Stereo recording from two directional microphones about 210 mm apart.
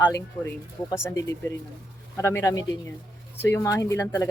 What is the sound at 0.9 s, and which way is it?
Speech, 10° left (ahead or behind).